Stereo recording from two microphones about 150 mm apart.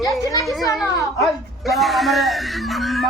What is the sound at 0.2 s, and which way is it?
Speech, 25° left (ahead or behind).